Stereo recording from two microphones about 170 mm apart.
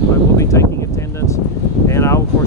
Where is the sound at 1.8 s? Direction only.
15° left (ahead or behind).